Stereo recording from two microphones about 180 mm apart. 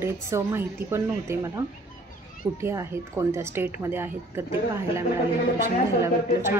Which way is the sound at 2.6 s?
15° right (ahead or behind).